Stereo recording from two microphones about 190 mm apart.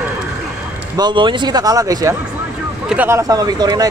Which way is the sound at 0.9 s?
25° right (ahead or behind).